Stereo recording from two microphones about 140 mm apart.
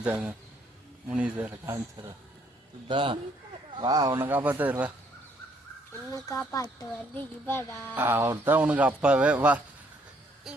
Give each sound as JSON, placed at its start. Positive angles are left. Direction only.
{"t": 0.0, "sound": "speech", "side_deg": -10}
{"t": 2.8, "sound": "a man's voice", "side_deg": -35}
{"t": 6.1, "sound": "speech", "side_deg": 25}
{"t": 7.9, "sound": "speech", "side_deg": -15}